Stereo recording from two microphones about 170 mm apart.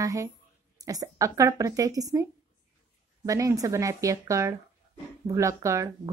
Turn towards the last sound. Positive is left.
turn(degrees=-20)  # may be behind; listen again after turning